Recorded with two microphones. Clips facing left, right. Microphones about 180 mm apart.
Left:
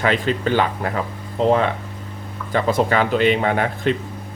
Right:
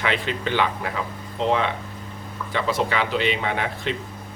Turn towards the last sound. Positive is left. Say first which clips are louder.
# left 6 dB
turn(degrees=45)  # may be behind; listen again after turning